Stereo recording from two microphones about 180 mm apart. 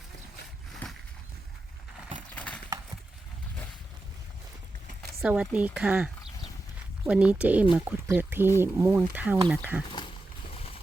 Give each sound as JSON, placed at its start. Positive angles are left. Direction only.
{"t": 0.7, "sound": "a sound", "side_deg": 0}
{"t": 2.3, "sound": "clip-clop", "side_deg": 5}
{"t": 5.2, "sound": "speech", "side_deg": -5}
{"t": 7.1, "sound": "speech", "side_deg": -5}